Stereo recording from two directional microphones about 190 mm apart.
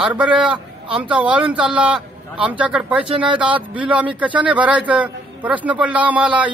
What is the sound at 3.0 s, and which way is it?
Speech, 25° right (ahead or behind).